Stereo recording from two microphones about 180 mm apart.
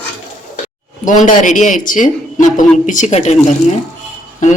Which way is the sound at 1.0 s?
45° left (ahead or behind).